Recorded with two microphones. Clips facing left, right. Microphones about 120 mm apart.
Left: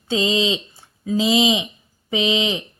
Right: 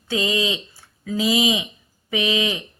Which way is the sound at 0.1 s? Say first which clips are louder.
Left 3 dB; 25° left (ahead or behind).